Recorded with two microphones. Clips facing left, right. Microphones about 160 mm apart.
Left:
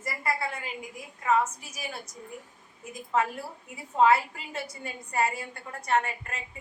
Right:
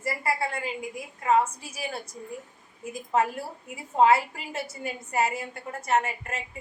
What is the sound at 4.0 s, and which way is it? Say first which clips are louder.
A woman's voice: right 2 dB; 25° right (ahead or behind).